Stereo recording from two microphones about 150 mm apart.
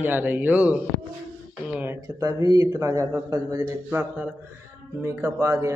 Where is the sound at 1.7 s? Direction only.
15° right (ahead or behind).